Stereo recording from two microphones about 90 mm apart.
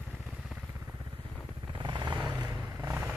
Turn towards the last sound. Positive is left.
turn(degrees=-30)  # may be behind; listen again after turning